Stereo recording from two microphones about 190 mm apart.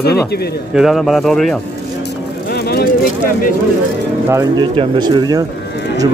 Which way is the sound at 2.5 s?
60° left (ahead or behind).